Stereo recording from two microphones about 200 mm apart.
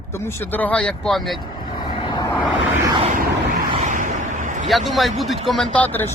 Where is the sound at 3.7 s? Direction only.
35° right (ahead or behind).